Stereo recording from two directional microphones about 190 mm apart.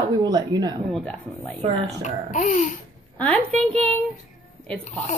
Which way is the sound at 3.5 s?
5° left (ahead or behind).